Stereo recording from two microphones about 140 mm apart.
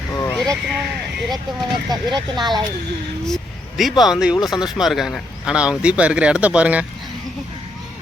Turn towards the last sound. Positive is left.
turn(degrees=-10)  # may be behind; listen again after turning